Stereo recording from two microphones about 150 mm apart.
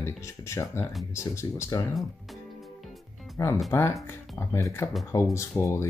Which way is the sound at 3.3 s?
20° left (ahead or behind).